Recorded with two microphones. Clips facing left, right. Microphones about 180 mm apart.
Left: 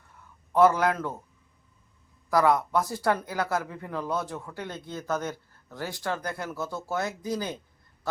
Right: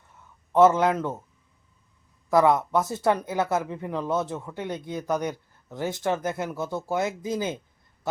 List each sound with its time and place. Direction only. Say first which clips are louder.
0.5 s speech: right 3 dB; 20° right (ahead or behind)
2.3 s speech: right 3 dB; 20° right (ahead or behind)